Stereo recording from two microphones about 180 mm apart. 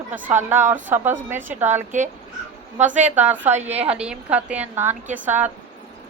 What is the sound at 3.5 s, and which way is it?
Speech, 40° right (ahead or behind).